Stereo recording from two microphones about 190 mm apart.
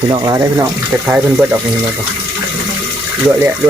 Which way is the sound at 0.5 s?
10° right (ahead or behind).